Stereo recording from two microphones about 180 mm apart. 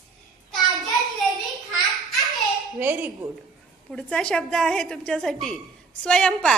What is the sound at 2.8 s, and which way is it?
Speech, 10° right (ahead or behind).